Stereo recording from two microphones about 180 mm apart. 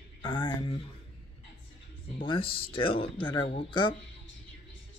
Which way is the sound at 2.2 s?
30° left (ahead or behind).